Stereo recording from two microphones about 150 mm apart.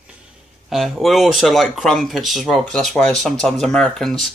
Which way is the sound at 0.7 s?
Centre (ahead or behind).